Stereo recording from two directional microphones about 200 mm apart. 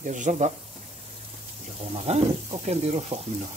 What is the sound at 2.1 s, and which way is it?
A man's voice, 35° right (ahead or behind).